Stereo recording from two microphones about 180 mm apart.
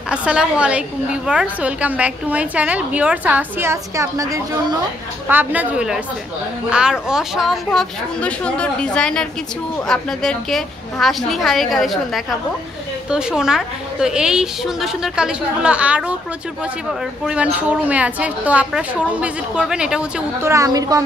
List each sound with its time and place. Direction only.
0.1 s a woman's voice: 5° right (ahead or behind)
17.3 s a woman's voice: 5° right (ahead or behind)
20.5 s a woman's voice: 20° right (ahead or behind)